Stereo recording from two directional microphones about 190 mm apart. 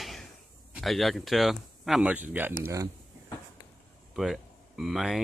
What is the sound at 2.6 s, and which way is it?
Speech, 15° right (ahead or behind).